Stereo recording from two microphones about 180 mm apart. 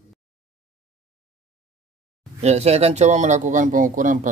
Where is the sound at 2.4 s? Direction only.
35° right (ahead or behind).